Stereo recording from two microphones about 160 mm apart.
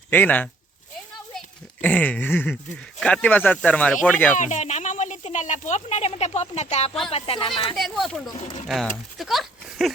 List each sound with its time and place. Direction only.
0.1 s speech: 10° left (ahead or behind)
1.8 s speech: 10° left (ahead or behind)
4.4 s speech: 50° left (ahead or behind); by 7.8 s 30° left (ahead or behind)
7.8 s speech: centre (ahead or behind)